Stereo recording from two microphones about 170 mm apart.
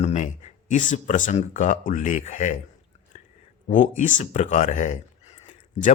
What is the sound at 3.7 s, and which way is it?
Speech, 50° left (ahead or behind).